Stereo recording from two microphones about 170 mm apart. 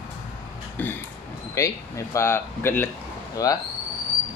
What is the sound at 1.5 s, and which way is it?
Speech, 20° left (ahead or behind).